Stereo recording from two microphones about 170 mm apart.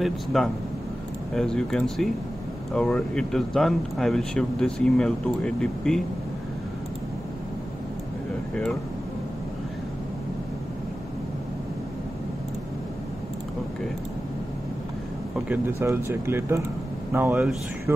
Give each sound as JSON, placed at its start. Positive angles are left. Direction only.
{"t": 0.0, "sound": "speech", "side_deg": 0}
{"t": 15.3, "sound": "speech", "side_deg": -10}